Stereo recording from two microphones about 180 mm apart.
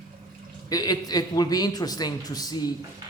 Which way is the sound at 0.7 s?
20° left (ahead or behind).